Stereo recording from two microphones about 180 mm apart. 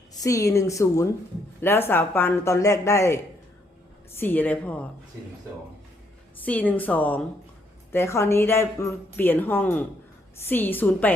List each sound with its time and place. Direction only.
0.2 s a woman's voice: 15° left (ahead or behind)
6.4 s a woman's voice: 10° left (ahead or behind)